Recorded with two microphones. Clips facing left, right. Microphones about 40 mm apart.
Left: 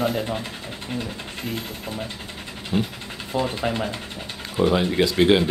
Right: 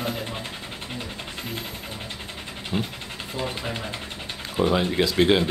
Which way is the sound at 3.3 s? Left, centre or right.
Left.